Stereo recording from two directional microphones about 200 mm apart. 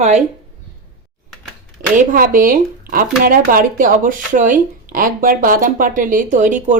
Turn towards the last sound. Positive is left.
turn(degrees=-40)  # may be behind; listen again after turning